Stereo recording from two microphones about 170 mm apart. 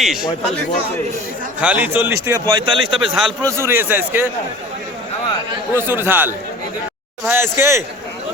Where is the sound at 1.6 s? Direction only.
10° right (ahead or behind); by 2.8 s 30° right (ahead or behind).